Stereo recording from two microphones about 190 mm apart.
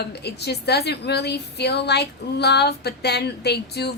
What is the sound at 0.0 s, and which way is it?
A woman's voice, 60° left (ahead or behind).